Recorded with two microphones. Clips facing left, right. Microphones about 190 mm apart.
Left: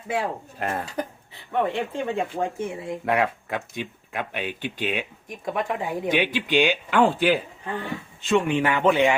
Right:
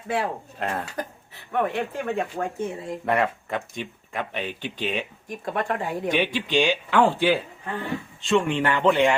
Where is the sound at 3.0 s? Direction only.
5° left (ahead or behind).